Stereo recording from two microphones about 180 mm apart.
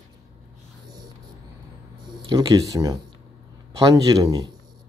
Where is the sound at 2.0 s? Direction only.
25° right (ahead or behind).